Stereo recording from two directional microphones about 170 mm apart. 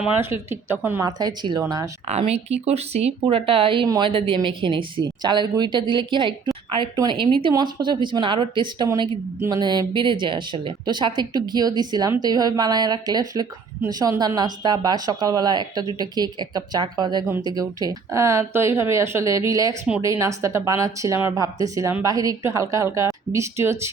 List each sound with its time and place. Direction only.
0.0 s speech: 15° right (ahead or behind)
1.0 s speech: 25° right (ahead or behind)
2.0 s speech: 40° right (ahead or behind); by 23.9 s 15° right (ahead or behind)